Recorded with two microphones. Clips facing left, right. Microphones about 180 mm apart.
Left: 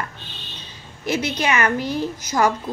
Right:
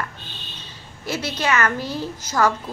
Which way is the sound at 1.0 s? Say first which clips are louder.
Left 2 dB; 15° left (ahead or behind).